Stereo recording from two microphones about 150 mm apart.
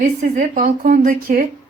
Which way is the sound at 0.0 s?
60° right (ahead or behind).